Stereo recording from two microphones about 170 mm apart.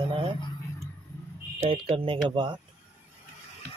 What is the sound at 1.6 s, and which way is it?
Speech, 35° right (ahead or behind).